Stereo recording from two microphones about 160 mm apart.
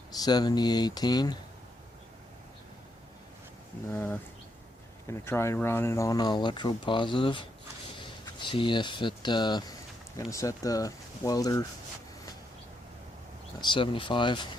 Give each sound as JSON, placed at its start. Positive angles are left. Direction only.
{"t": 0.2, "sound": "speech", "side_deg": 25}
{"t": 3.9, "sound": "speech", "side_deg": 15}
{"t": 13.6, "sound": "speech", "side_deg": 30}